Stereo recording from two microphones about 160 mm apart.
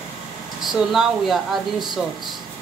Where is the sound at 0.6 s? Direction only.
Centre (ahead or behind).